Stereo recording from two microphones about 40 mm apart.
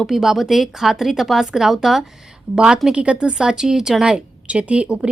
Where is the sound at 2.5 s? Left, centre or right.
Right.